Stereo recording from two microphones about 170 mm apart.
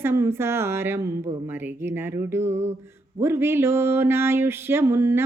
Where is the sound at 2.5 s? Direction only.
40° right (ahead or behind).